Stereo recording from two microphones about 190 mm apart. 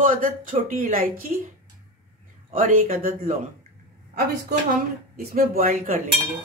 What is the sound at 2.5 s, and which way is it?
Speech, 45° right (ahead or behind).